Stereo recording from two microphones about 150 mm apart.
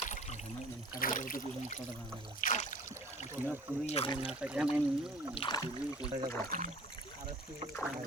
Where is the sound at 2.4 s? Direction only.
60° left (ahead or behind).